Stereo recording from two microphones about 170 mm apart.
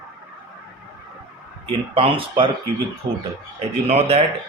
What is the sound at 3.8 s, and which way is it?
Speech, 40° right (ahead or behind).